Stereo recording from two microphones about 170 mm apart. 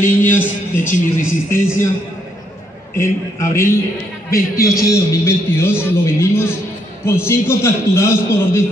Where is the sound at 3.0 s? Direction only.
15° left (ahead or behind).